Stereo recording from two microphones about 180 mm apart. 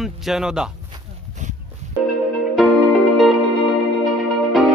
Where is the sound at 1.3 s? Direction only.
45° right (ahead or behind).